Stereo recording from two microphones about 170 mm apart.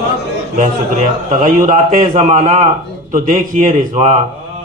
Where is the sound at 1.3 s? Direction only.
50° right (ahead or behind).